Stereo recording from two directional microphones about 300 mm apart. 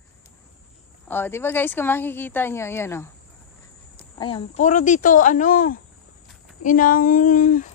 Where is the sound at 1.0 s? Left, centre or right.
Centre.